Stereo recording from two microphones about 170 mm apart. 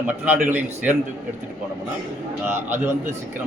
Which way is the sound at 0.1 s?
10° right (ahead or behind).